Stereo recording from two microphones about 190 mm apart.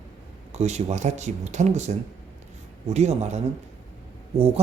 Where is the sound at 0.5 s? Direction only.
35° right (ahead or behind).